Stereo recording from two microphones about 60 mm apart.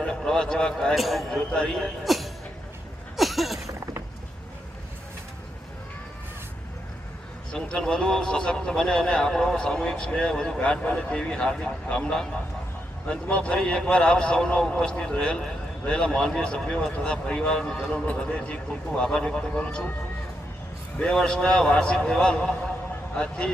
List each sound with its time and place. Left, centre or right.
0.0 s a man's voice: centre
0.9 s a man's voice: centre
1.4 s speech: centre
2.0 s music: centre
3.2 s a sound: centre
7.5 s speech: centre
10.6 s speech: left
13.1 s a man's voice: left
18.0 s a man's voice: left
21.0 s a man's voice: centre